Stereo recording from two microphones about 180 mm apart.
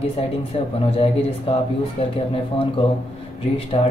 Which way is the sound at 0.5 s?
30° left (ahead or behind).